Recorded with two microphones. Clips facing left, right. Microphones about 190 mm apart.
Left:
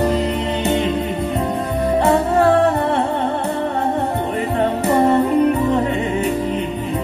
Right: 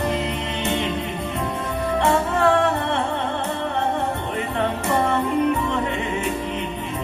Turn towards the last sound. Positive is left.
turn(degrees=35)  # may be behind; listen again after turning